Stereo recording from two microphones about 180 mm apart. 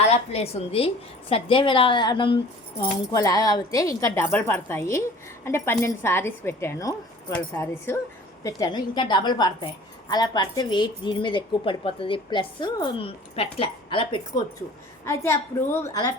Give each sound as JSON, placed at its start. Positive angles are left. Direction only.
{"t": 0.0, "sound": "a woman's voice", "side_deg": 35}
{"t": 15.0, "sound": "a woman's voice", "side_deg": 15}